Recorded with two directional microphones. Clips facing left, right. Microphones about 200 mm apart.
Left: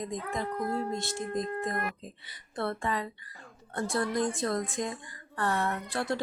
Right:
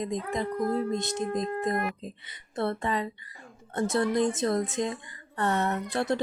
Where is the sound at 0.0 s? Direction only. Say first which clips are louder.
Right 4 dB; 20° right (ahead or behind).